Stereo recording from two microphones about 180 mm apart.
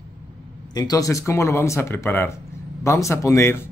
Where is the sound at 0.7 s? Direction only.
20° left (ahead or behind).